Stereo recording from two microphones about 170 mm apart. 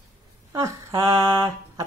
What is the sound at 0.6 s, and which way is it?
Speech, 20° right (ahead or behind).